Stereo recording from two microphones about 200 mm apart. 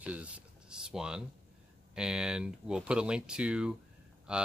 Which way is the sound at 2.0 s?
5° right (ahead or behind).